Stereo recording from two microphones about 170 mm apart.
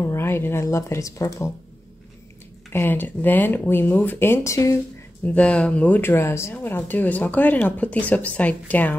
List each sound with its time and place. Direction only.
0.0 s speech: 15° left (ahead or behind)
2.7 s speech: 10° left (ahead or behind)